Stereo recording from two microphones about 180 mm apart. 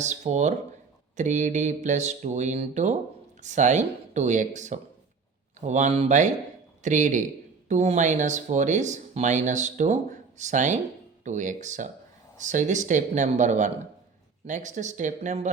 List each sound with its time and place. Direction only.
0.0 s speech: 40° right (ahead or behind)